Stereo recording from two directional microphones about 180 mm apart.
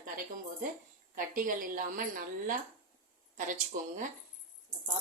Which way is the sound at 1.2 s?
50° right (ahead or behind).